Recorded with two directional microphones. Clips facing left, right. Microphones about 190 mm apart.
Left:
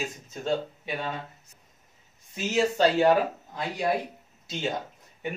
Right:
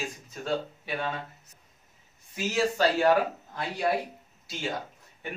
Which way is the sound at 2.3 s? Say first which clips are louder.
Left 2 dB; 20° left (ahead or behind).